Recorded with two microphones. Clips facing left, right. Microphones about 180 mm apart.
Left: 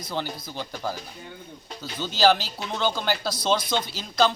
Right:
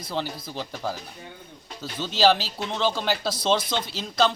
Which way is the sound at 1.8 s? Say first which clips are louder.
Right 1 dB; 25° right (ahead or behind).